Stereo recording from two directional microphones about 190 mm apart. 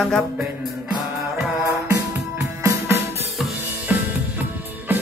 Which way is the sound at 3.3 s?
Centre (ahead or behind).